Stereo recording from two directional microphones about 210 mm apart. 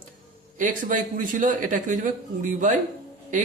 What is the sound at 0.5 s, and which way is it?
A man's voice, 40° right (ahead or behind).